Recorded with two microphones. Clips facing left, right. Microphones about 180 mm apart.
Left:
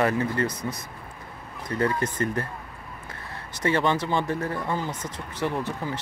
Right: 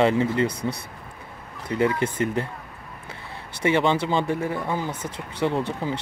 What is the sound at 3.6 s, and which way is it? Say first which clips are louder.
Speech: right 3 dB; 20° right (ahead or behind).